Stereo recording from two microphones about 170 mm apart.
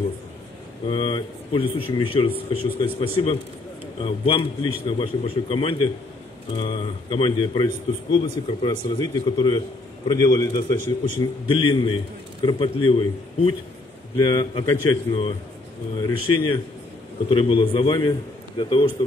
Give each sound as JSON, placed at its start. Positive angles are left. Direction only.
{"t": 0.8, "sound": "a man's voice", "side_deg": 30}
{"t": 4.8, "sound": "a man's voice", "side_deg": 30}